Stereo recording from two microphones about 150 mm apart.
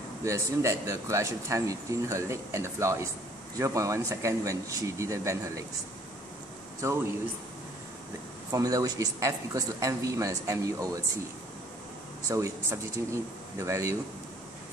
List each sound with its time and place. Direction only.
0.2 s speech: 20° right (ahead or behind)
8.5 s speech: 25° right (ahead or behind)
12.3 s speech: 20° right (ahead or behind)